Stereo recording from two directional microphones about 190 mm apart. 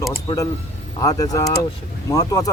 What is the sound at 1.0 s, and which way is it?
A man's voice, 20° left (ahead or behind).